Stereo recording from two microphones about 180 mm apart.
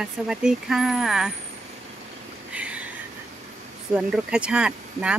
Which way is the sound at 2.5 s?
5° right (ahead or behind).